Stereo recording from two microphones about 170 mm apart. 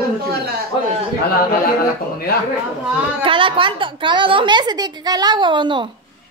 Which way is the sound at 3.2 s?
30° right (ahead or behind).